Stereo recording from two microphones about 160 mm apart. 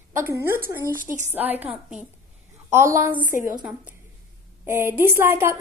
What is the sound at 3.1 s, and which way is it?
Speech, 55° left (ahead or behind).